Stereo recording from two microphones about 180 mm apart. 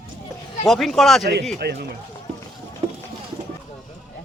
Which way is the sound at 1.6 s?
65° right (ahead or behind).